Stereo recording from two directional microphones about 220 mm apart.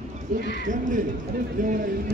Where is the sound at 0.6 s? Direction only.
35° right (ahead or behind).